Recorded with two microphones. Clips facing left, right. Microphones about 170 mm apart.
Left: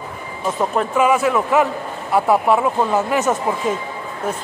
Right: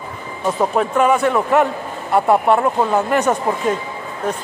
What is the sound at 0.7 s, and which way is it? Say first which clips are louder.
Speech: even; centre (ahead or behind).